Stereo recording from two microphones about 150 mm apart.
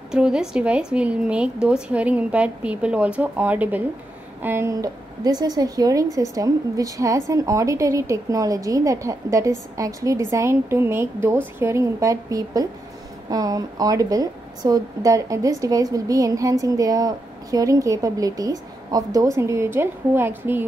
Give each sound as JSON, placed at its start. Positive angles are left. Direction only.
{"t": 0.1, "sound": "a woman's voice", "side_deg": -5}